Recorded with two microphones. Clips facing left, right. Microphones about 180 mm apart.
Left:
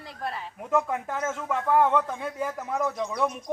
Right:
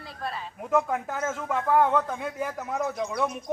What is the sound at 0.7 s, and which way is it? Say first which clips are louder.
A man's voice: right 1 dB; 5° right (ahead or behind).